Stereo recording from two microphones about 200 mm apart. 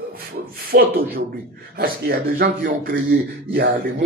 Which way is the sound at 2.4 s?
45° right (ahead or behind).